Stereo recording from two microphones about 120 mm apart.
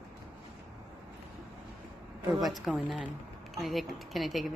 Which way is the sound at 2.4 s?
Centre (ahead or behind).